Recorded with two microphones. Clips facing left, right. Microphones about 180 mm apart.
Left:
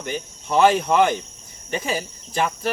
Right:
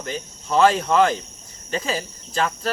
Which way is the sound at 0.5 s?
10° left (ahead or behind).